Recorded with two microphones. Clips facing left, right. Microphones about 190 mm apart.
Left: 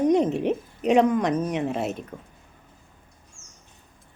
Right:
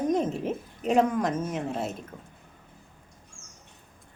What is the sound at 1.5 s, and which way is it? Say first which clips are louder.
Speech: left 5 dB; 70° left (ahead or behind).